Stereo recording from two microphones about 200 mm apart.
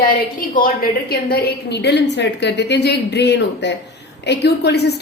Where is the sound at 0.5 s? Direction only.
45° left (ahead or behind).